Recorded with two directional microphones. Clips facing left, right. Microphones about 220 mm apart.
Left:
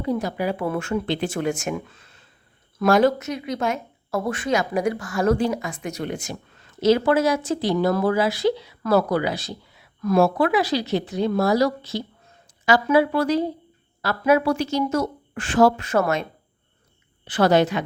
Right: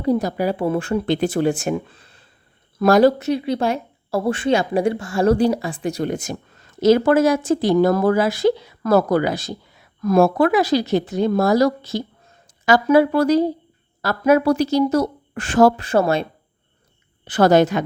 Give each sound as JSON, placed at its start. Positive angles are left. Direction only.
{"t": 0.0, "sound": "speech", "side_deg": -40}
{"t": 1.0, "sound": "speech", "side_deg": -45}
{"t": 15.8, "sound": "speech", "side_deg": -30}
{"t": 17.2, "sound": "speech", "side_deg": -45}